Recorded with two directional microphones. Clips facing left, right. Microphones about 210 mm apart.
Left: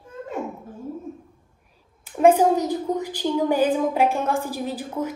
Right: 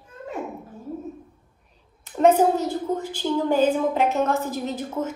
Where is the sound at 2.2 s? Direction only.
10° left (ahead or behind).